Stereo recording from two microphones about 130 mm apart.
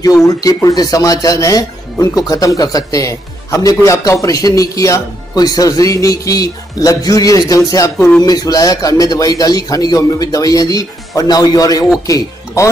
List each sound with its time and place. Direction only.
0.0 s a man's voice: 25° left (ahead or behind)